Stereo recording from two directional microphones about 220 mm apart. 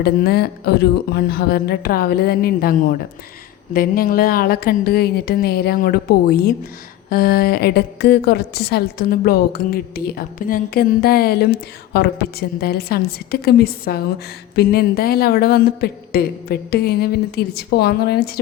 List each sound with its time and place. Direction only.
0.0 s a woman's voice: 45° left (ahead or behind)